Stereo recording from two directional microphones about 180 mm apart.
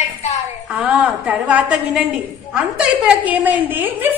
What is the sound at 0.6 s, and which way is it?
A woman's voice, 10° right (ahead or behind).